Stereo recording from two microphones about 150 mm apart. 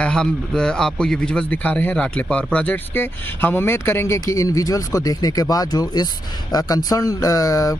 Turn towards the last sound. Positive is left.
turn(degrees=25)  # may be behind; listen again after turning